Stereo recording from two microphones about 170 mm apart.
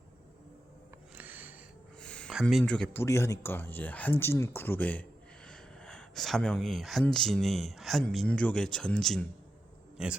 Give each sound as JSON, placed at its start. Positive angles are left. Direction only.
{"t": 1.1, "sound": "music", "side_deg": -10}
{"t": 2.0, "sound": "speech", "side_deg": 5}